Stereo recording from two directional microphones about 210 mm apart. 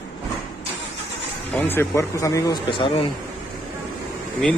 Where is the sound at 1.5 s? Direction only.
10° left (ahead or behind).